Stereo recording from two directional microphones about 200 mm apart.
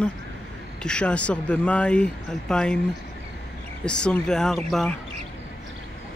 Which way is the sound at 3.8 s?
5° left (ahead or behind).